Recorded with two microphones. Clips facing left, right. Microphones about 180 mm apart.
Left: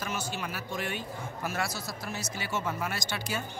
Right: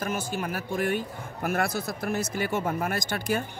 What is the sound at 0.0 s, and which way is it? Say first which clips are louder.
Speech: right 5 dB; 50° right (ahead or behind).